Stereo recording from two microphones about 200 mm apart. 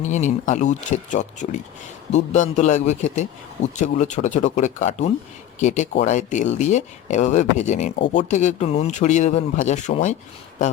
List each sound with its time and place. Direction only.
0.0 s speech: 35° left (ahead or behind)